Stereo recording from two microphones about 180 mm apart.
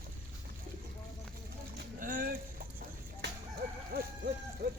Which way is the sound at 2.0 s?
50° right (ahead or behind).